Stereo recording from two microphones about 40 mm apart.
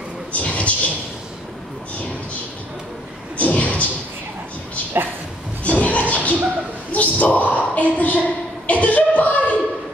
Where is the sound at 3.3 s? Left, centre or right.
Left.